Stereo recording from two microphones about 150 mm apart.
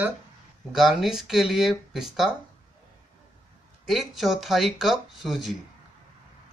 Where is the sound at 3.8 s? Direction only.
Centre (ahead or behind).